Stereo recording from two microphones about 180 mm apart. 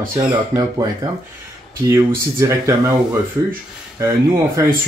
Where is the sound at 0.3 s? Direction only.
20° right (ahead or behind).